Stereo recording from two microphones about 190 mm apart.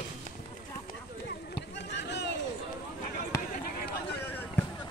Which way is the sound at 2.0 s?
65° left (ahead or behind).